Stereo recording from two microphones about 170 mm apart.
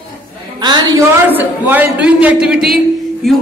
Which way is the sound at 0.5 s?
25° right (ahead or behind).